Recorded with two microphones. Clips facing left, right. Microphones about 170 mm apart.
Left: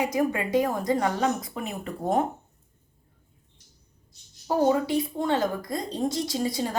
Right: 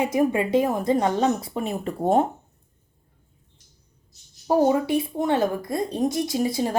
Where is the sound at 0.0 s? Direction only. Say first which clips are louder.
Right 4 dB; 25° right (ahead or behind).